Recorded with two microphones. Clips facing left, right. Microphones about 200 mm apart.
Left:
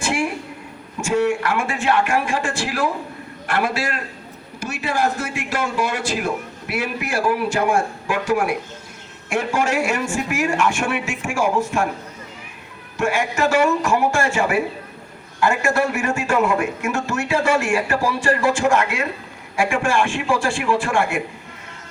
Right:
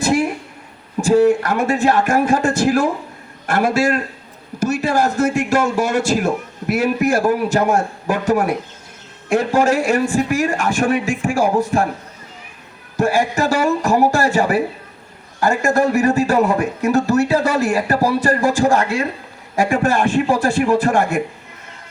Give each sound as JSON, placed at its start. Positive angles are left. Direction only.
{"t": 0.0, "sound": "a sound", "side_deg": -40}
{"t": 1.0, "sound": "a man's voice", "side_deg": -35}
{"t": 13.0, "sound": "speech", "side_deg": -35}